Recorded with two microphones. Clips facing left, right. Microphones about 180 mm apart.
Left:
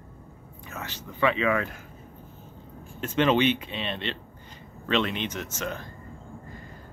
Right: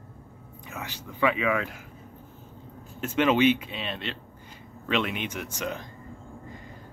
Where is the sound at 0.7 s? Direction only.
10° right (ahead or behind).